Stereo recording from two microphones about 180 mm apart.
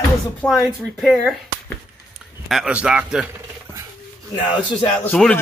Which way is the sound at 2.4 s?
5° right (ahead or behind).